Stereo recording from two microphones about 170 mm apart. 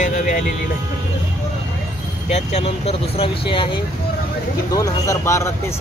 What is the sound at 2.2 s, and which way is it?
Speech, 35° left (ahead or behind).